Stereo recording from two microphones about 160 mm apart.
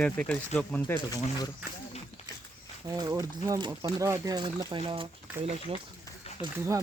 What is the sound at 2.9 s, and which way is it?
Speech, 20° right (ahead or behind).